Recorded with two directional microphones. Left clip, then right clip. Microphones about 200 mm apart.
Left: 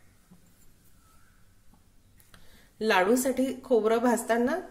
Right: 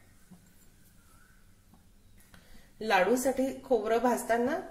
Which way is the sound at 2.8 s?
40° left (ahead or behind).